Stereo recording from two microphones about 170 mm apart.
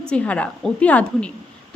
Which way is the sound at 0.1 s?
10° left (ahead or behind).